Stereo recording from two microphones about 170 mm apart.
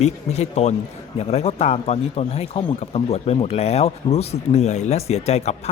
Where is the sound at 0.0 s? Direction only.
40° left (ahead or behind).